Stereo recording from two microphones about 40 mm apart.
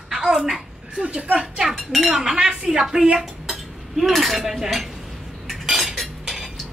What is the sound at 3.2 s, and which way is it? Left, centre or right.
Cutlery, centre.